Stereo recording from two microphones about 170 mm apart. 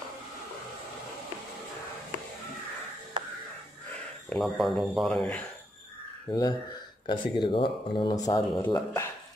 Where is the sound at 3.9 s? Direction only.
5° left (ahead or behind).